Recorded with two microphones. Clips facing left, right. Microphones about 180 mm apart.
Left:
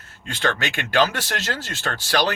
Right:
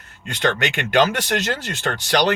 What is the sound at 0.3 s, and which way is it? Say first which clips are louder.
Speech: right 3 dB; 20° right (ahead or behind).